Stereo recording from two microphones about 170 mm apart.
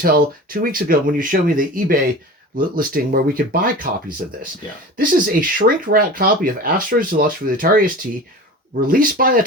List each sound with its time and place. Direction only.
0.0 s speech: 60° right (ahead or behind)
4.9 s speech: 55° right (ahead or behind)